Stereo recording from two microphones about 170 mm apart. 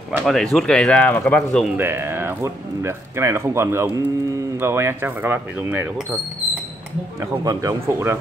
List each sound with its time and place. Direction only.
0.2 s speech: centre (ahead or behind)
1.8 s speech: 15° right (ahead or behind)
7.2 s speech: 20° right (ahead or behind)